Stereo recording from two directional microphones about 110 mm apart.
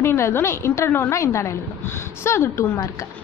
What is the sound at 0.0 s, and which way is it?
Speech, 25° left (ahead or behind).